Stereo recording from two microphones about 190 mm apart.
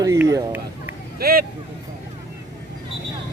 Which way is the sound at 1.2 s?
50° right (ahead or behind).